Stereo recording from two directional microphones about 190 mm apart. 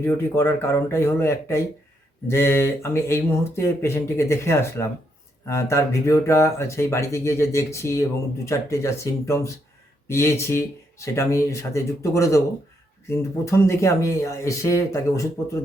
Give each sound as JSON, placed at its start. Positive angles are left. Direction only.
{"t": 0.0, "sound": "speech", "side_deg": 10}